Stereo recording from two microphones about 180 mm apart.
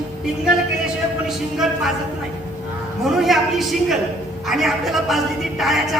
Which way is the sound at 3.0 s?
Centre (ahead or behind).